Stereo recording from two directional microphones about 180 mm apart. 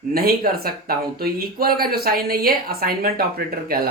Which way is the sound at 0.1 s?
55° right (ahead or behind).